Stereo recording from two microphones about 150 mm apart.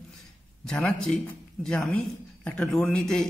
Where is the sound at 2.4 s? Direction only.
5° left (ahead or behind).